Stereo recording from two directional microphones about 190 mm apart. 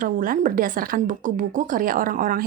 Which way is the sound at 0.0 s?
45° right (ahead or behind).